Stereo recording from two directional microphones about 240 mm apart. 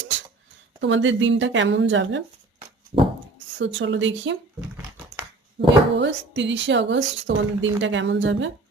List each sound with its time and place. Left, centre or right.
0.8 s speech: right
3.6 s speech: right
5.5 s speech: right